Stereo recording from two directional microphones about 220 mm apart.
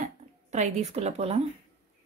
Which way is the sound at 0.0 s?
30° right (ahead or behind).